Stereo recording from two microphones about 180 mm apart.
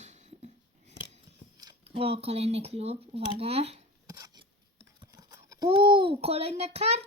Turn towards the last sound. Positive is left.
turn(degrees=-35)  # may be behind; listen again after turning